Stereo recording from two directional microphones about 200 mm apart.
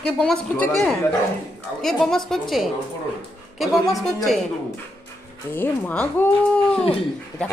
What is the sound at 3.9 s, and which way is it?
Speech, 15° left (ahead or behind).